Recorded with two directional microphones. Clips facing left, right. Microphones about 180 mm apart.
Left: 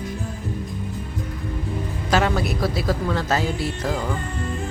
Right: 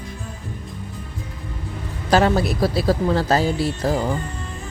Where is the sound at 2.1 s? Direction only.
35° right (ahead or behind).